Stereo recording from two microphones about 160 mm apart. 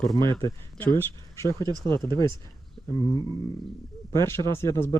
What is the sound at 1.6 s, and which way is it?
Speech, 25° right (ahead or behind).